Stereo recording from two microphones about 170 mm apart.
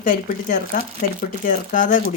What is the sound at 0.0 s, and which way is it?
Speech, 55° left (ahead or behind).